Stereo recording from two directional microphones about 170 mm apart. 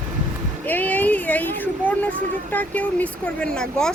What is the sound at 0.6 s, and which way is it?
Speech, 10° left (ahead or behind).